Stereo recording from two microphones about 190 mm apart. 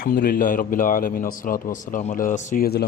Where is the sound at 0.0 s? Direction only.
50° left (ahead or behind).